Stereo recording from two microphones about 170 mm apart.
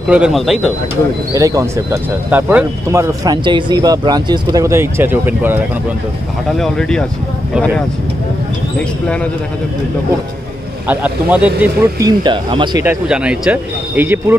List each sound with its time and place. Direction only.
0.1 s speech: 5° right (ahead or behind)
1.3 s speech: 20° right (ahead or behind)
6.5 s speech: 5° left (ahead or behind)
8.7 s speech: 5° left (ahead or behind)
10.9 s speech: 10° right (ahead or behind); by 12.8 s 30° right (ahead or behind)
12.8 s speech: 5° right (ahead or behind)